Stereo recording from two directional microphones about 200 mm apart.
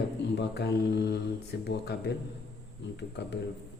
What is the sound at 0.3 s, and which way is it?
Speech, 55° left (ahead or behind).